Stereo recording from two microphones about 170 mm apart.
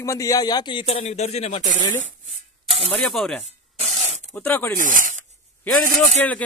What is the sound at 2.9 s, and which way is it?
Speech, centre (ahead or behind).